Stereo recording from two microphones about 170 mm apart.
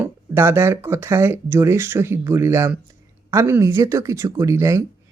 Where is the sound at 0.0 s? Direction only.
15° right (ahead or behind).